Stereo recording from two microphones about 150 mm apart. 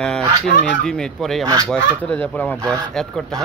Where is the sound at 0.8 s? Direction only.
5° left (ahead or behind).